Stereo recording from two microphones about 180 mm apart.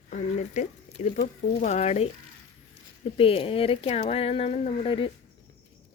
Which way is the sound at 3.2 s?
30° left (ahead or behind).